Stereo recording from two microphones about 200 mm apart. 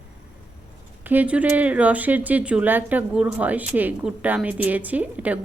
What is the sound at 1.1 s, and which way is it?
Speech, 5° right (ahead or behind).